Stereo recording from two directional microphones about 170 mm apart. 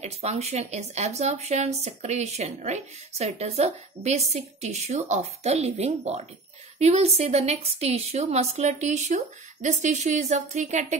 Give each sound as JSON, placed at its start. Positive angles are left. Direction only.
{"t": 0.0, "sound": "speech", "side_deg": -40}